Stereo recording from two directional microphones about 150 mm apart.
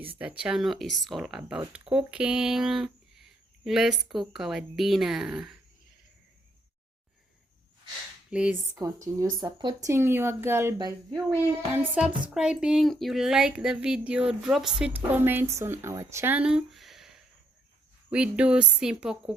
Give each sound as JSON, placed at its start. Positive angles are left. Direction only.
{"t": 0.0, "sound": "speech", "side_deg": -10}
{"t": 8.3, "sound": "speech", "side_deg": -5}
{"t": 8.8, "sound": "speech", "side_deg": -25}
{"t": 9.9, "sound": "speech", "side_deg": -15}
{"t": 11.7, "sound": "speech", "side_deg": -10}